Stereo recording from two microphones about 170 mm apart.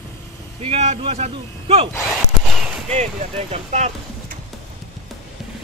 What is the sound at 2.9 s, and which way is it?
Speech, 40° right (ahead or behind).